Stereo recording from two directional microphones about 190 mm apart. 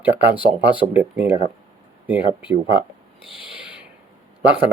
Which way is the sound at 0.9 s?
10° right (ahead or behind).